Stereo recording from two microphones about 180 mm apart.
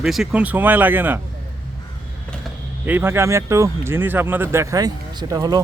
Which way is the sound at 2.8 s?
10° right (ahead or behind).